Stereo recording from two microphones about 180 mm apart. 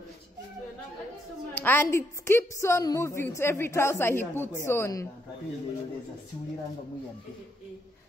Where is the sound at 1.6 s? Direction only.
10° left (ahead or behind).